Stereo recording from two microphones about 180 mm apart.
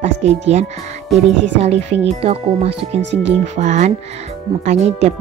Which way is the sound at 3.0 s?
80° right.